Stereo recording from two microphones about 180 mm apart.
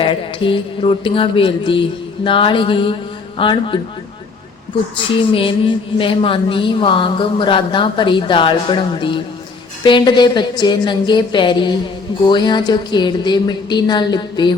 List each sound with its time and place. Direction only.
0.0 s speech: 30° left (ahead or behind)
5.3 s speech: 30° left (ahead or behind)